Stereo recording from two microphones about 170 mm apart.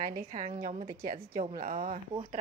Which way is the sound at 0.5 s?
40° right (ahead or behind).